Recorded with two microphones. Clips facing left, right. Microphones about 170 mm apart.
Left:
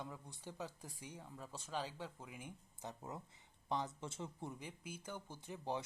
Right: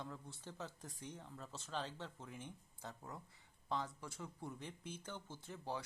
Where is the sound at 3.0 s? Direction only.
20° left (ahead or behind).